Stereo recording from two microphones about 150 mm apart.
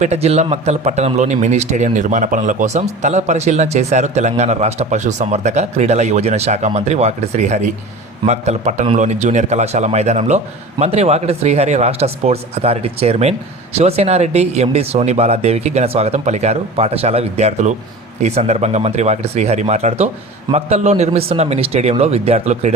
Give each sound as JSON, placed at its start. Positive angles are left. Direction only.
{"t": 0.0, "sound": "speech", "side_deg": -45}